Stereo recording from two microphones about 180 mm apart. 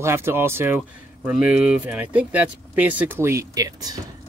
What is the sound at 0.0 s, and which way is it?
Speech, 15° right (ahead or behind).